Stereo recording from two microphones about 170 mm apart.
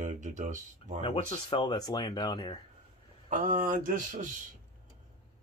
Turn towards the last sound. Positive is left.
turn(degrees=-50)  # may be behind; listen again after turning